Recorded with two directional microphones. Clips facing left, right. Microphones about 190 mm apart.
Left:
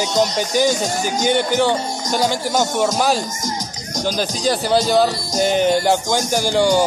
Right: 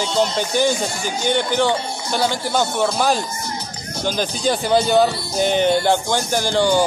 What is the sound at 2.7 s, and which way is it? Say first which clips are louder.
Speech: left 1 dB; 10° left (ahead or behind).